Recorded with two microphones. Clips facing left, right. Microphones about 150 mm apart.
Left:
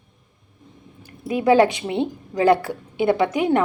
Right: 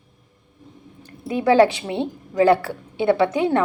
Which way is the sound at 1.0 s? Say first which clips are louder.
Left 1 dB; 15° left (ahead or behind).